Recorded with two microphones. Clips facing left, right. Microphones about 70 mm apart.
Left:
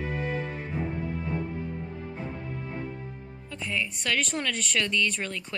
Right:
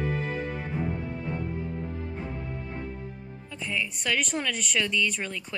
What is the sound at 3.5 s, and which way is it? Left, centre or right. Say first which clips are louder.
Speech: even; centre.